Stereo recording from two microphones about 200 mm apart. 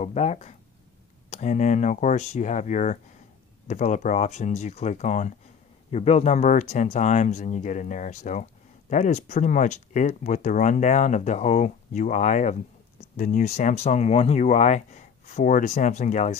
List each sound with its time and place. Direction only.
0.0 s speech: 35° left (ahead or behind)